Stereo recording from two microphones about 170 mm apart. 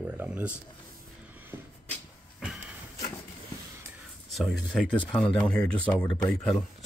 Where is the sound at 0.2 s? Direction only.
10° right (ahead or behind).